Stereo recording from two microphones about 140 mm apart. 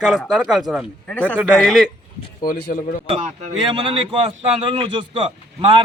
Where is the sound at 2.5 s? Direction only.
90° left.